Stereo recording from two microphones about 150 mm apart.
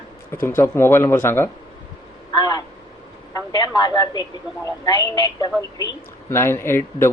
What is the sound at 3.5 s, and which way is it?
A woman's voice, 30° left (ahead or behind).